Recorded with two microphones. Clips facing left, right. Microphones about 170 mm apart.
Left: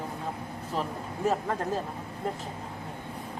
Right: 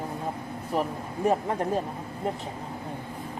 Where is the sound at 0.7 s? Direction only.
10° right (ahead or behind).